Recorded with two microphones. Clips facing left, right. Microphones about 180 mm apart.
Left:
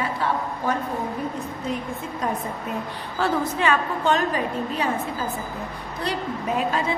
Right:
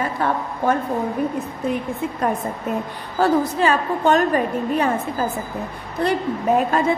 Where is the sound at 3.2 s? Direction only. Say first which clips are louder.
Right 6 dB; 40° right (ahead or behind).